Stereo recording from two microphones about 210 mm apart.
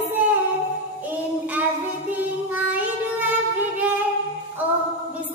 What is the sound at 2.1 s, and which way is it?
Child singing, 10° right (ahead or behind).